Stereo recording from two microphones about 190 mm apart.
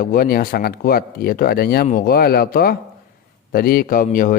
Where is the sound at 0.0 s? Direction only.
50° left (ahead or behind).